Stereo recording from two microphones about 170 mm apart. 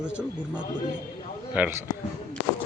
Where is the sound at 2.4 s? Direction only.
90° left.